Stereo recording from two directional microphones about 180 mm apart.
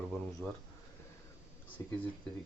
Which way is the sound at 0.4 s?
Centre (ahead or behind).